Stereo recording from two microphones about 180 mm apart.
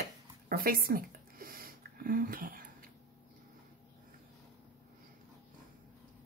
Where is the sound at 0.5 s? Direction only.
55° right (ahead or behind).